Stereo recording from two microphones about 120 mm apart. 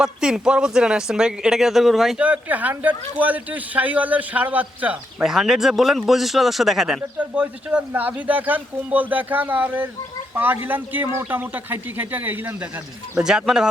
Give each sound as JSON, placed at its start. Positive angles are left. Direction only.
{"t": 0.0, "sound": "speech", "side_deg": -5}
{"t": 5.2, "sound": "speech", "side_deg": -5}
{"t": 7.2, "sound": "speech", "side_deg": -10}